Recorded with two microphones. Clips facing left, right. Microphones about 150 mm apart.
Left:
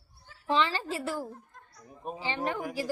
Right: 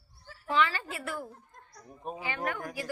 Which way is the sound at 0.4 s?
30° left (ahead or behind).